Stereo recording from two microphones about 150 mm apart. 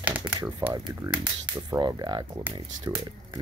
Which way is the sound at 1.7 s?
30° right (ahead or behind).